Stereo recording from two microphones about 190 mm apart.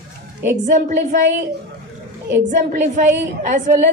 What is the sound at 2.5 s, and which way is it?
A woman's voice, 40° right (ahead or behind).